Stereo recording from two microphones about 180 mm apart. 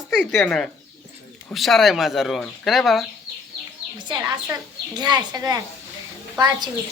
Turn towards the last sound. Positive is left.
turn(degrees=-20)  # may be behind; listen again after turning